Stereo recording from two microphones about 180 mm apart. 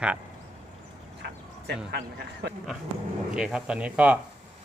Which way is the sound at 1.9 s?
65° right (ahead or behind).